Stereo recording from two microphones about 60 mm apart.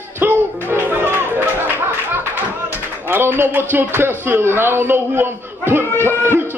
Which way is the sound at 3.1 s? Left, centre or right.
Right.